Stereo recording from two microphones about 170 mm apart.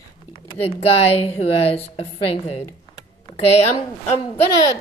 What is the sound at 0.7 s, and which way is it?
A woman's voice, 35° left (ahead or behind).